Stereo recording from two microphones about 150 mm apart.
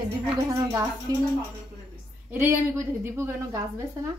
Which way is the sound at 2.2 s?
15° right (ahead or behind).